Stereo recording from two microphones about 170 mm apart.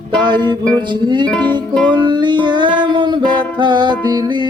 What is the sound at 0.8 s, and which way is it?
Music, 25° right (ahead or behind).